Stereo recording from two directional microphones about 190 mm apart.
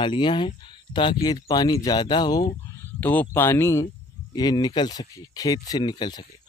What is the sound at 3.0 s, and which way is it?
Speech, 10° left (ahead or behind).